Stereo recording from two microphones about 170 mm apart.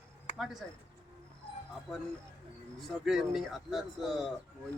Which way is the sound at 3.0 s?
Centre (ahead or behind).